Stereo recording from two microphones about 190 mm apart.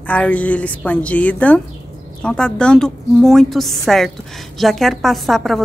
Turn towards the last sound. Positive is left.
turn(degrees=0)  # may be behind; listen again after turning